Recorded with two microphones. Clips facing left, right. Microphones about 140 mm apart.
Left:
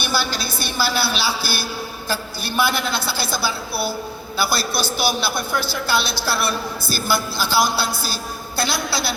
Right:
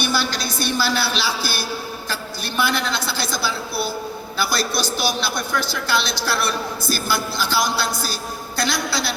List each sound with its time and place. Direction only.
0.1 s a man's voice: 10° left (ahead or behind)
0.4 s a woman's voice: 15° right (ahead or behind)
0.8 s a man's voice: 10° left (ahead or behind)
2.6 s a man's voice: 5° left (ahead or behind)
5.3 s a woman's voice: 15° right (ahead or behind)
5.9 s a man's voice: 5° left (ahead or behind)